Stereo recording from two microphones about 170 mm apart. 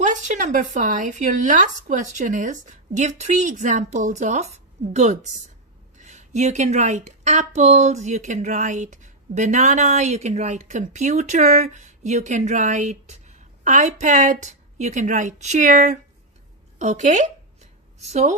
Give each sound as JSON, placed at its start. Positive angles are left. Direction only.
{"t": 0.0, "sound": "a woman's voice", "side_deg": -45}